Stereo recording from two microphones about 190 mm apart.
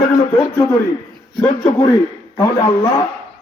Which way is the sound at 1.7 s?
20° left (ahead or behind).